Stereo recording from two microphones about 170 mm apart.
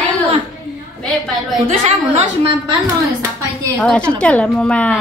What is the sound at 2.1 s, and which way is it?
Speech, 30° right (ahead or behind).